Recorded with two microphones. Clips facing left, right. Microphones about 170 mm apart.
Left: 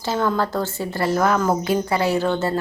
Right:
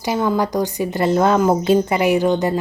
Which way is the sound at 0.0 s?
15° right (ahead or behind).